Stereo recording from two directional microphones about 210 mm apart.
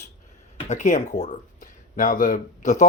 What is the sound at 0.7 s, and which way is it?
Speech, 35° left (ahead or behind).